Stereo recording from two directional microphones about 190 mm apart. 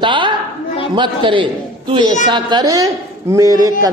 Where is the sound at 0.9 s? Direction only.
25° right (ahead or behind).